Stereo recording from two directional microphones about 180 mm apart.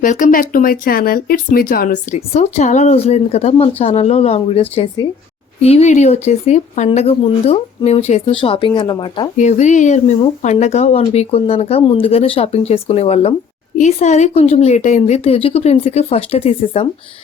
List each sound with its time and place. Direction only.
0.0 s speech: 45° left (ahead or behind)
5.6 s speech: 35° left (ahead or behind)
9.4 s speech: 40° left (ahead or behind)